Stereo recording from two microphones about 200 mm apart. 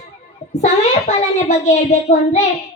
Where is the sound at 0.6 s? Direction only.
35° left (ahead or behind).